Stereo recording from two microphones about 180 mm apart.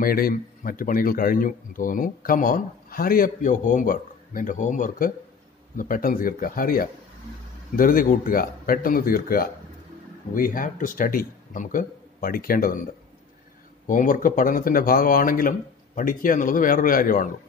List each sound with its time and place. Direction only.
0.0 s speech: 55° left (ahead or behind)
13.8 s speech: 45° left (ahead or behind)